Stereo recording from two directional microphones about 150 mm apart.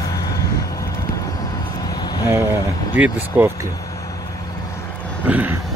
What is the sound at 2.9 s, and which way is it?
Speech, 10° right (ahead or behind).